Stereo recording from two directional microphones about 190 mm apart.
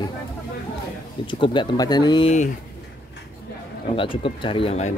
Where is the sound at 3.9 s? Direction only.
25° left (ahead or behind).